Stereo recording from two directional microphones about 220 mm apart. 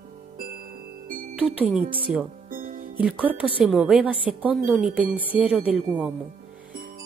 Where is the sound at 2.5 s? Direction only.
40° right (ahead or behind).